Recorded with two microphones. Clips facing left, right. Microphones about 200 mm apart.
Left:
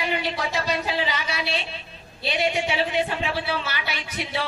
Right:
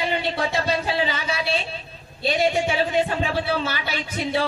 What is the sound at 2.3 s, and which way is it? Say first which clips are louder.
Speech: right 3 dB; 40° right (ahead or behind).